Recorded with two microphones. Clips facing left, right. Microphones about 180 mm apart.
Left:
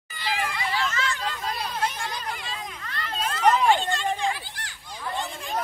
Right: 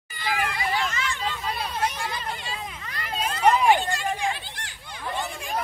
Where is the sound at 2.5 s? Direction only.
5° right (ahead or behind).